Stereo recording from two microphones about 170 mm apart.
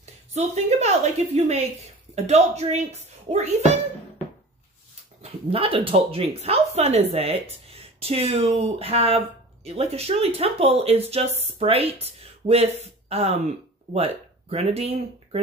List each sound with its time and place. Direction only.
0.0 s a woman's voice: 40° right (ahead or behind)
5.2 s speech: 35° right (ahead or behind)